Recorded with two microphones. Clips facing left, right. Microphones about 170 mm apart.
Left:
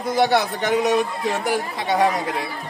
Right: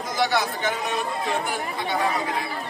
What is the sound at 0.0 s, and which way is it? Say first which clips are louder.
Speech: left 5 dB; 60° left (ahead or behind).